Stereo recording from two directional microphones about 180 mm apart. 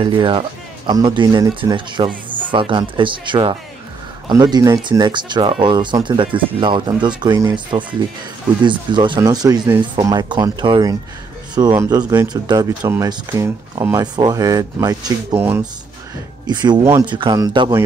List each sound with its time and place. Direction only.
0.0 s speech: 30° right (ahead or behind); by 15.6 s 10° right (ahead or behind)
16.4 s speech: 25° right (ahead or behind)